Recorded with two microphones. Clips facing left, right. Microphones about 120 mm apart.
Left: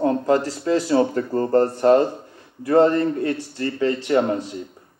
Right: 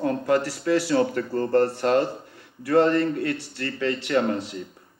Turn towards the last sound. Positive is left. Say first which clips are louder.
# left 3 dB
turn(degrees=20)  # may be behind; listen again after turning